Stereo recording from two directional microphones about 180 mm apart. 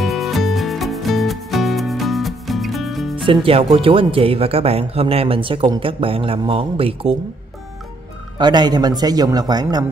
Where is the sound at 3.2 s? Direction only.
30° right (ahead or behind).